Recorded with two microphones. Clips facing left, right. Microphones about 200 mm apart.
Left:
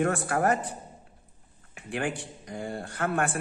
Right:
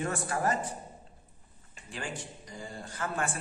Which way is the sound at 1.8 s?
60° left (ahead or behind).